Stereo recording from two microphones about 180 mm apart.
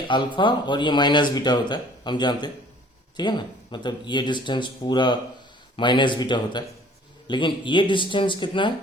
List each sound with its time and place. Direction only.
0.3 s speech: 25° left (ahead or behind)